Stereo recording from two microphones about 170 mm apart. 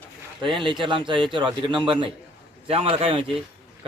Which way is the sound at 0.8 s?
30° right (ahead or behind).